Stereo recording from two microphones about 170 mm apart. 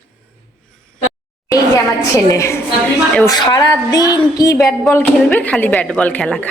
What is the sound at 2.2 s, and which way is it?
A woman's voice, 20° left (ahead or behind).